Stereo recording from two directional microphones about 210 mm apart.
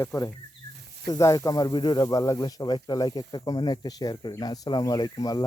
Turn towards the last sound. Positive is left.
turn(degrees=20)  # may be behind; listen again after turning